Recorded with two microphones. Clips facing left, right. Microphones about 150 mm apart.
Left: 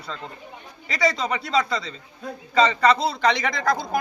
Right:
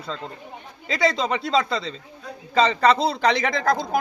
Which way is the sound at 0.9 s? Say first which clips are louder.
Right 2 dB; 25° right (ahead or behind).